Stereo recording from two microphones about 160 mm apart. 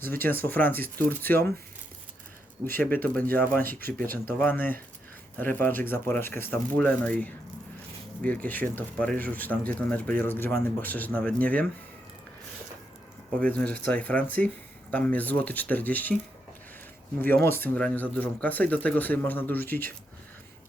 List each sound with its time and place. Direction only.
0.0 s speech: 15° left (ahead or behind)
2.7 s speech: 10° left (ahead or behind)
3.8 s speech: 65° right (ahead or behind)
4.1 s speech: 10° left (ahead or behind)
13.4 s speech: 10° left (ahead or behind)
17.2 s speech: 10° left (ahead or behind)